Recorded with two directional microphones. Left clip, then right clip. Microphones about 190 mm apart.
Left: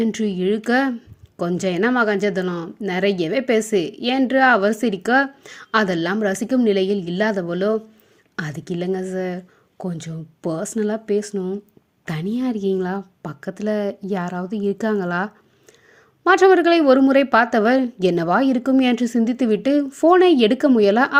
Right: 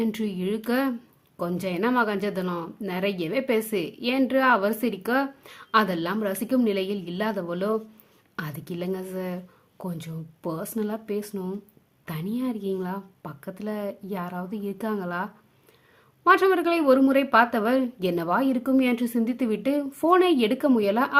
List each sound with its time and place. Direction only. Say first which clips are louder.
0.0 s speech: left 7 dB; 20° left (ahead or behind)